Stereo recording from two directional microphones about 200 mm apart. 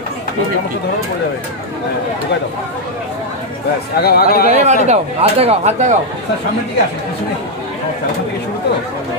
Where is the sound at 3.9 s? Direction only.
50° left (ahead or behind).